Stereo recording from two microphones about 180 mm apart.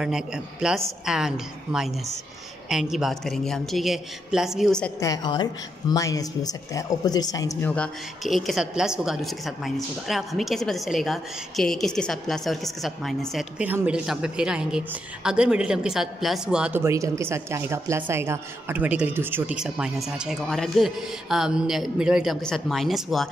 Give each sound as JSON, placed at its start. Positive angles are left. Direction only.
{"t": 0.0, "sound": "a woman's voice", "side_deg": -5}
{"t": 5.0, "sound": "speech", "side_deg": 20}
{"t": 7.7, "sound": "a woman's voice", "side_deg": 5}